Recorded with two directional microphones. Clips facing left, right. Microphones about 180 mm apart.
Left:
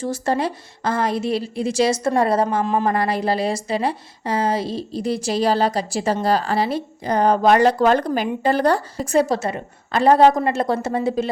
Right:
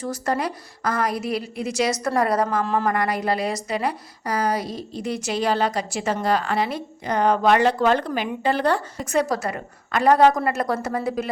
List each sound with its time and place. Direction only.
0.0 s a woman's voice: 30° left (ahead or behind)